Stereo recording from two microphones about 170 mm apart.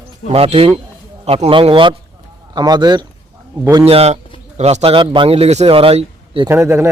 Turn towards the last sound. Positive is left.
turn(degrees=-15)  # may be behind; listen again after turning